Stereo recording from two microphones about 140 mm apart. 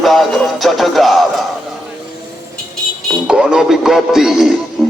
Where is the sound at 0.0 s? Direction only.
Centre (ahead or behind).